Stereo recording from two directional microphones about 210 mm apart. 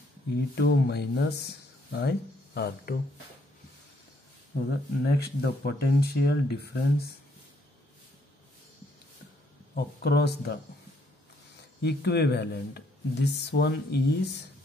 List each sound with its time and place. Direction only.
0.6 s speech: 50° left (ahead or behind)
4.6 s speech: 50° left (ahead or behind)
9.8 s speech: 50° left (ahead or behind)
11.8 s speech: 50° left (ahead or behind)